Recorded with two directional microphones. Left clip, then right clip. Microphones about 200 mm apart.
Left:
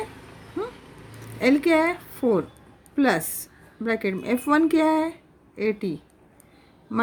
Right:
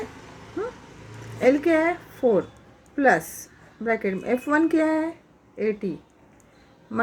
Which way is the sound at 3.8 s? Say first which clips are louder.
Right 1 dB; 75° left (ahead or behind).